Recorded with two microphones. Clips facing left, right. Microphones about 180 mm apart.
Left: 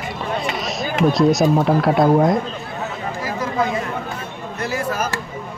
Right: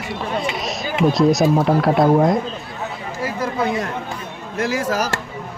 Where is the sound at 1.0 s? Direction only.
Centre (ahead or behind).